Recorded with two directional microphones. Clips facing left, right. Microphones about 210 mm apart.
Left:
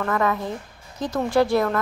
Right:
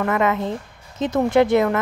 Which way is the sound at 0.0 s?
20° right (ahead or behind).